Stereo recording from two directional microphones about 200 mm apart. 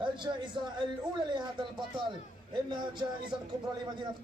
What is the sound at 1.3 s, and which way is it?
Speech, 20° right (ahead or behind).